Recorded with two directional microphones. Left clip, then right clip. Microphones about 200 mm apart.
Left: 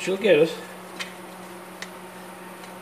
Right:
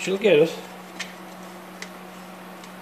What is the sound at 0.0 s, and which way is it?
Speech, 15° right (ahead or behind).